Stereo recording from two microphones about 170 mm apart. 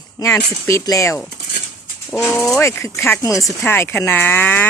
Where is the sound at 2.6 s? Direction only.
15° left (ahead or behind).